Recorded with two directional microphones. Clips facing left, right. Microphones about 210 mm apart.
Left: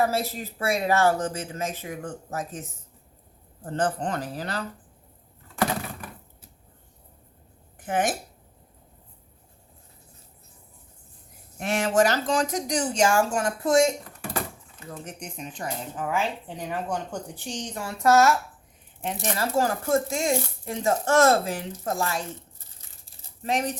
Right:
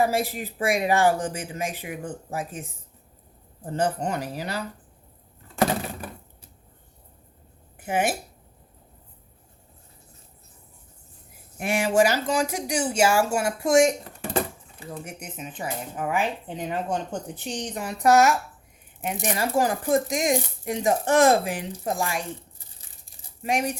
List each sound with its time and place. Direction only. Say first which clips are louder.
0.0 s speech: right 2 dB; 15° right (ahead or behind)
7.8 s speech: right 1 dB; 10° right (ahead or behind)
11.5 s speech: right 1 dB; 10° right (ahead or behind)
23.4 s speech: right 1 dB; 10° right (ahead or behind)